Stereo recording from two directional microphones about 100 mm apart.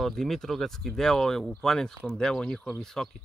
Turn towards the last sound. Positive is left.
turn(degrees=5)  # may be behind; listen again after turning